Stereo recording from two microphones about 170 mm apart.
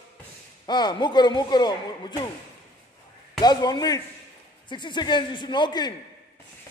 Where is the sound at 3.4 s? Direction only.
25° left (ahead or behind).